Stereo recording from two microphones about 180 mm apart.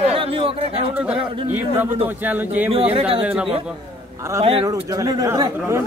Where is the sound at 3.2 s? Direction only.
5° right (ahead or behind).